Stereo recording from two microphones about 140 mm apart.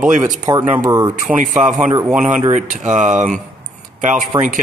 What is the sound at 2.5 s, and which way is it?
Speech, 60° right (ahead or behind).